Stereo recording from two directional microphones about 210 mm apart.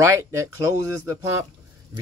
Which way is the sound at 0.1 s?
15° right (ahead or behind).